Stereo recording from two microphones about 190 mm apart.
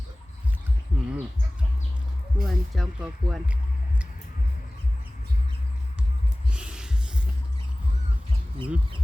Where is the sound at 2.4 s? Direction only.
Centre (ahead or behind).